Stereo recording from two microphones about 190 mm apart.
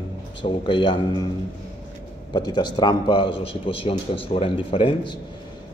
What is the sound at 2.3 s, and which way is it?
Speech, 25° left (ahead or behind).